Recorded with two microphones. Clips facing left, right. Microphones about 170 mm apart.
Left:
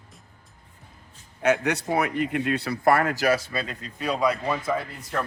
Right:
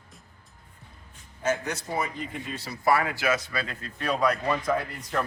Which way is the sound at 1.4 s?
65° left (ahead or behind).